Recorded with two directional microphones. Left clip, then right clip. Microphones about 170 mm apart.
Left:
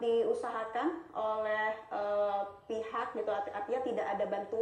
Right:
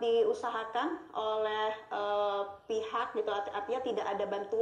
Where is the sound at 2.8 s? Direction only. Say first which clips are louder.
Even; 30° right (ahead or behind).